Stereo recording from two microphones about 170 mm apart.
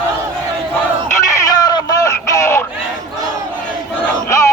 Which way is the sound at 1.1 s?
20° left (ahead or behind).